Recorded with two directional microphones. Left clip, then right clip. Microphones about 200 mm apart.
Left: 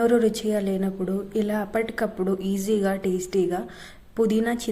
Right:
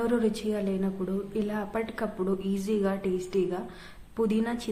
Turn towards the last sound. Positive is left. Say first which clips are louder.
# left 5 dB
turn(degrees=20)  # may be behind; listen again after turning